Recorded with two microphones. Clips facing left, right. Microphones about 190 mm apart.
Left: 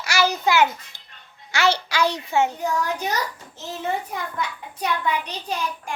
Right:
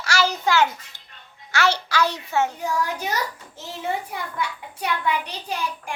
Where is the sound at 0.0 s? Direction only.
10° left (ahead or behind).